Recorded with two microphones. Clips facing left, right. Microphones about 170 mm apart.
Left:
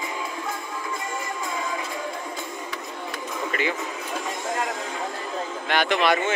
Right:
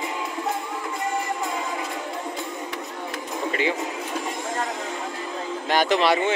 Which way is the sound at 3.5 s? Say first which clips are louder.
Right 3 dB; 30° right (ahead or behind).